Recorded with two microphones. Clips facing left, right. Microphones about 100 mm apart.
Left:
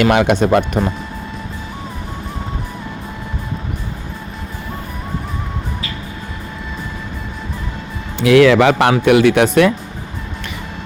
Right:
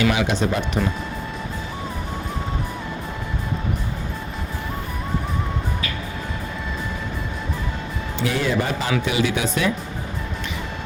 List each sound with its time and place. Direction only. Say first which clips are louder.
0.0 s speech: left 7 dB; 60° left (ahead or behind)
8.2 s speech: left 13 dB; 90° left; by 9.7 s 65° left (ahead or behind)